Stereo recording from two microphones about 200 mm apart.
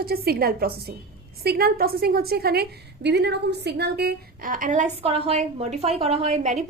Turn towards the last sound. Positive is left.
turn(degrees=-35)  # may be behind; listen again after turning